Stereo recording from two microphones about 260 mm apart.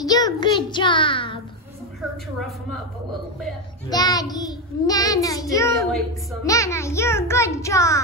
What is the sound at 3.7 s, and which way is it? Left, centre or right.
A child's voice, centre.